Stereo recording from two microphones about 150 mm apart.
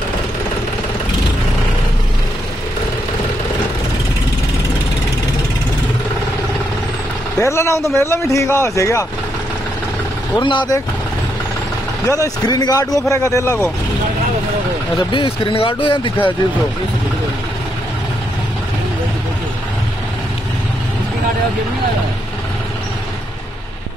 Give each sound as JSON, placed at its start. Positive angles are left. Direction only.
{"t": 7.3, "sound": "a man's voice", "side_deg": 20}
{"t": 10.3, "sound": "speech", "side_deg": 30}
{"t": 12.1, "sound": "a man's voice", "side_deg": 25}
{"t": 15.0, "sound": "speech", "side_deg": 35}